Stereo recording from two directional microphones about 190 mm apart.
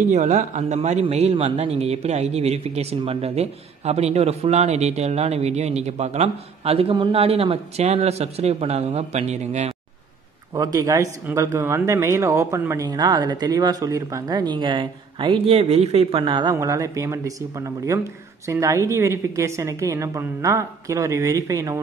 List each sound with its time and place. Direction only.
0.1 s a man's voice: 40° right (ahead or behind)
10.5 s a woman's voice: 20° right (ahead or behind)